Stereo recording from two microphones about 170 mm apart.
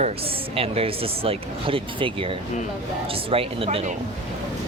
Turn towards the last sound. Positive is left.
turn(degrees=-35)  # may be behind; listen again after turning